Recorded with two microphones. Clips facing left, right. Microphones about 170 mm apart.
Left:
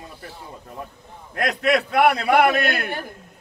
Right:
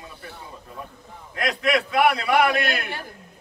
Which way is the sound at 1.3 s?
55° left (ahead or behind).